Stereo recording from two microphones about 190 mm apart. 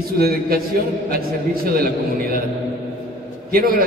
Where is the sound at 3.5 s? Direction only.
50° right (ahead or behind).